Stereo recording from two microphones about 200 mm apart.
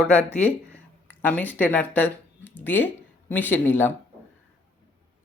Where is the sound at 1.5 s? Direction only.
10° left (ahead or behind).